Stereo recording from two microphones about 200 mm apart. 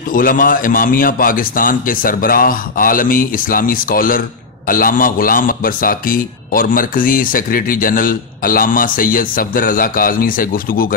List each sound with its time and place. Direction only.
0.1 s a man's voice: 45° left (ahead or behind)